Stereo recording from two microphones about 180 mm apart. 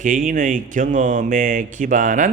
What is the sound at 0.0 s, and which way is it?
A man's voice, 45° right (ahead or behind).